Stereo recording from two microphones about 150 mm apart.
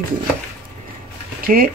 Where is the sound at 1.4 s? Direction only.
75° right (ahead or behind).